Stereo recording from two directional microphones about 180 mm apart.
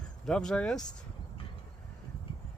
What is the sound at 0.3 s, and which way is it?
Speech, 5° left (ahead or behind).